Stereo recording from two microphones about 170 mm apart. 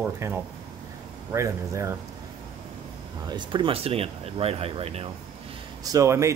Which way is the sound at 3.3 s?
25° right (ahead or behind).